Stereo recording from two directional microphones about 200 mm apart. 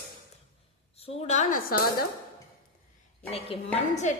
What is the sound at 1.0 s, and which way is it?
Speech, 30° left (ahead or behind).